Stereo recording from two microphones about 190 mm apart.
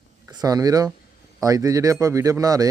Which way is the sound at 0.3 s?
20° right (ahead or behind).